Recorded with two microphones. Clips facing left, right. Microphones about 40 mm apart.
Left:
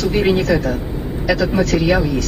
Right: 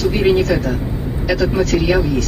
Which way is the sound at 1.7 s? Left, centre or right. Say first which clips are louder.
Left 1 dB; centre.